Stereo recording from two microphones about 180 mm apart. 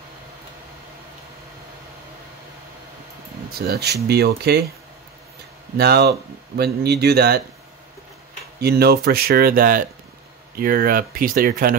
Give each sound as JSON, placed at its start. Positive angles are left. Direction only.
{"t": 3.5, "sound": "speech", "side_deg": -60}
{"t": 5.8, "sound": "speech", "side_deg": -65}
{"t": 8.5, "sound": "speech", "side_deg": -60}